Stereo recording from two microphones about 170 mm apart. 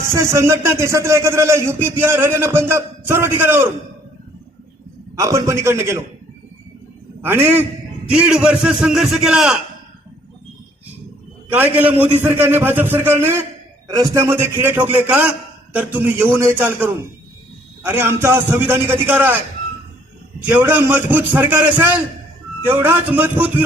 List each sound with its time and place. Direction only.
0.1 s speech: 15° right (ahead or behind)
5.1 s speech: 20° right (ahead or behind)
7.2 s a man's voice: 15° right (ahead or behind)
11.5 s speech: 10° right (ahead or behind)
20.5 s speech: 10° right (ahead or behind)